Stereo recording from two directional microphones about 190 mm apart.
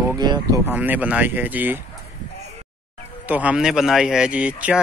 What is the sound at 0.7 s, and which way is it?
Speech, 10° right (ahead or behind).